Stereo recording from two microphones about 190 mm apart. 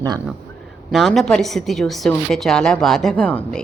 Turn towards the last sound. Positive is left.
turn(degrees=5)  # may be behind; listen again after turning